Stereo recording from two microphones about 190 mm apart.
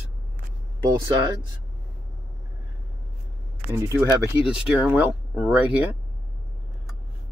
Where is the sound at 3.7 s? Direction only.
15° right (ahead or behind).